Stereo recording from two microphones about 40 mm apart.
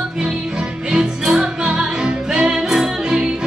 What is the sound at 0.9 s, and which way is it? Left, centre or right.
Music, centre.